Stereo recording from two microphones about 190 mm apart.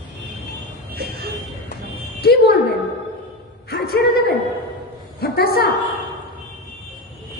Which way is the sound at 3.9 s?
55° left (ahead or behind).